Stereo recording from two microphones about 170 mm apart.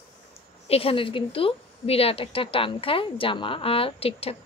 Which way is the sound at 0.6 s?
35° left (ahead or behind).